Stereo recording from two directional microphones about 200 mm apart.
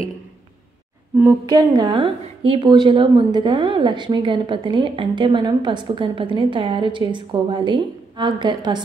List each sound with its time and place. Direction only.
1.1 s a woman's voice: 15° right (ahead or behind)